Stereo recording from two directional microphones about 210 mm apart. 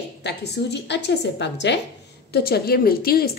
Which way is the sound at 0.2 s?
50° left (ahead or behind).